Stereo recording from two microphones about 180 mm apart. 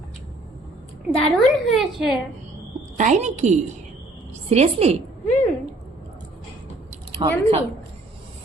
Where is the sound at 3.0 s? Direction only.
40° right (ahead or behind).